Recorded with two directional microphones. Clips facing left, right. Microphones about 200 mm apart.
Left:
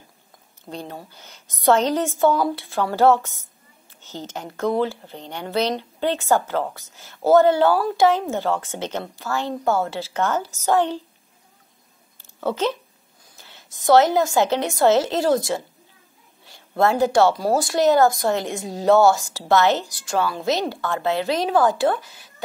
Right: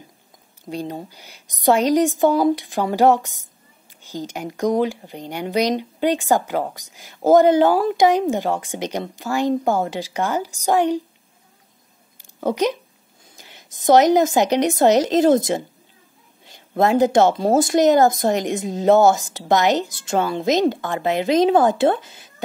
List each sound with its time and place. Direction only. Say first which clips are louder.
0.7 s speech: right 6 dB; 15° right (ahead or behind)
12.2 s a sound: right 3 dB; 15° right (ahead or behind)
13.4 s speech: right 1 dB; 15° right (ahead or behind)